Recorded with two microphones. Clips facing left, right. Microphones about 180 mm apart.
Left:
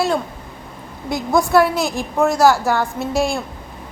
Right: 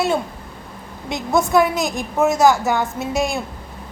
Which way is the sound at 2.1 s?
Centre (ahead or behind).